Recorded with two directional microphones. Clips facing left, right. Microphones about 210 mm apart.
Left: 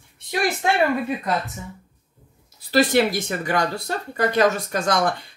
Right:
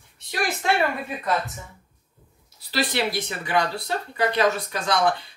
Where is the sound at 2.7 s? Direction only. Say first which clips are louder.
Left 7 dB; 45° left (ahead or behind).